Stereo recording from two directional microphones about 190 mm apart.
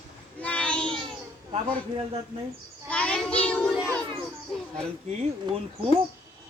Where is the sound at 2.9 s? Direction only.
5° left (ahead or behind).